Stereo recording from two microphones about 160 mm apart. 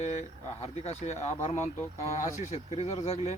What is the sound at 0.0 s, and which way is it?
Speech, 40° left (ahead or behind).